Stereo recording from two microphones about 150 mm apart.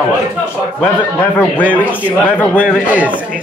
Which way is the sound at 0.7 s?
10° left (ahead or behind).